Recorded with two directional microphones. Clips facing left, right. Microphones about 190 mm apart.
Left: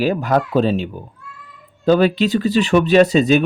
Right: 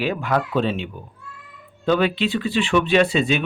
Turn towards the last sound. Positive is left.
turn(degrees=40)  # may be behind; listen again after turning